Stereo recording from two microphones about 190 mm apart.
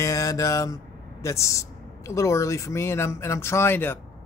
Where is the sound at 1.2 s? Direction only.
15° left (ahead or behind).